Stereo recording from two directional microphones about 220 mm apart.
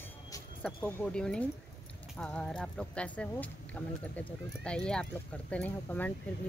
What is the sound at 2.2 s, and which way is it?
Speech, 5° left (ahead or behind).